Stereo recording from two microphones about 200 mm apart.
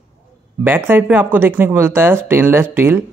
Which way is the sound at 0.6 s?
10° right (ahead or behind).